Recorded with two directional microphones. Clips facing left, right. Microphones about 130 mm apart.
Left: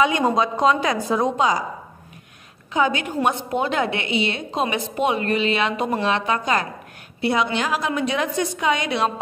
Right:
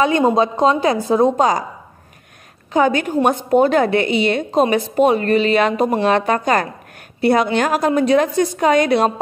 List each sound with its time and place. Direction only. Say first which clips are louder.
0.4 s a woman's voice: right 4 dB; 30° right (ahead or behind)
2.7 s a woman's voice: right 6 dB; 45° right (ahead or behind)